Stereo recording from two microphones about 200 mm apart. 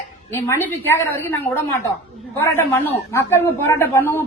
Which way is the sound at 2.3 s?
10° left (ahead or behind).